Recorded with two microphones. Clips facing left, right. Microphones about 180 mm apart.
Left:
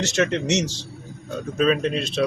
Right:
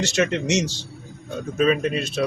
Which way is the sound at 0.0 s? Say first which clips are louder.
Even; 10° right (ahead or behind).